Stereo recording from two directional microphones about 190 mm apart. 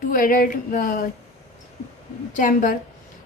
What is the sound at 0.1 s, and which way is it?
Speech, 45° left (ahead or behind).